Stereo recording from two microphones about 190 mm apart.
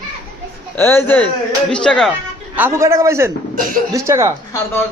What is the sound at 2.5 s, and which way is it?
A man's voice, 10° right (ahead or behind).